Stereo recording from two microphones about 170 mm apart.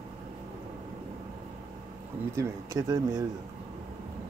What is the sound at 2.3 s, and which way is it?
Speech, 20° right (ahead or behind).